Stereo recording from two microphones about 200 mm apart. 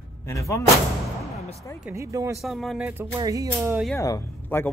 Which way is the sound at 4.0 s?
15° left (ahead or behind).